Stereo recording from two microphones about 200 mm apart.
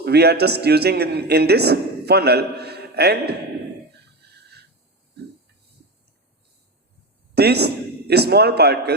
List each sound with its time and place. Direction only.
0.0 s a man's voice: 55° right (ahead or behind)
7.3 s a man's voice: 55° right (ahead or behind)